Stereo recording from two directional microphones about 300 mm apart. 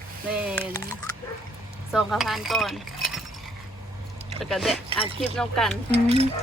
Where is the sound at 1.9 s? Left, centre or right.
Centre.